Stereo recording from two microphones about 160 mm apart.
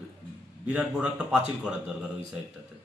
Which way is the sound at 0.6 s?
5° right (ahead or behind).